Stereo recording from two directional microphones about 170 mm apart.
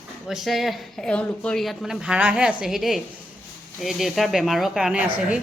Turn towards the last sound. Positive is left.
turn(degrees=-5)  # may be behind; listen again after turning